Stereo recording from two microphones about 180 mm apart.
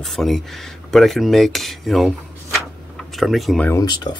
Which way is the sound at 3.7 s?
25° left (ahead or behind).